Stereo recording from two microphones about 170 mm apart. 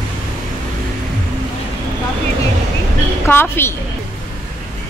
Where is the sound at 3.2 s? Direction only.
15° left (ahead or behind).